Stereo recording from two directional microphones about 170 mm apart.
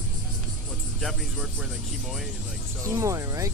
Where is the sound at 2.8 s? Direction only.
15° right (ahead or behind).